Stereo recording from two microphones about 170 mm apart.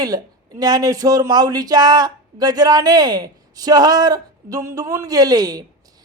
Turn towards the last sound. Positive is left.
turn(degrees=-20)  # may be behind; listen again after turning